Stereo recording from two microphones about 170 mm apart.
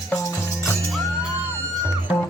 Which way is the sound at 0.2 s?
15° left (ahead or behind).